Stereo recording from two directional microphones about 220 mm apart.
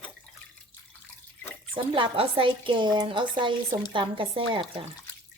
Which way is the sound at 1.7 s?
25° right (ahead or behind).